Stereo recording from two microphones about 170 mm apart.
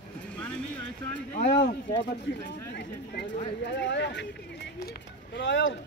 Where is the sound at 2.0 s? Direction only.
85° left.